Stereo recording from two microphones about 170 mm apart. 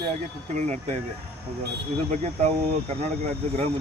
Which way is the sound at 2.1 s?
40° right (ahead or behind).